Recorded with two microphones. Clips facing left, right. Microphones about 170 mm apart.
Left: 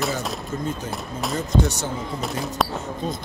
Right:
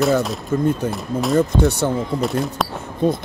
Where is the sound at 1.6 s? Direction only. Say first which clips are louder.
Right 5 dB; 60° right (ahead or behind).